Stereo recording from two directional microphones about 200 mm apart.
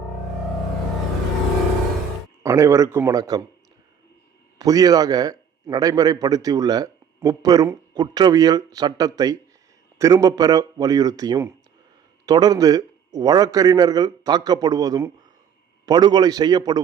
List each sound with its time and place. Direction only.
2.4 s speech: 15° right (ahead or behind)
4.5 s a man's voice: 20° right (ahead or behind)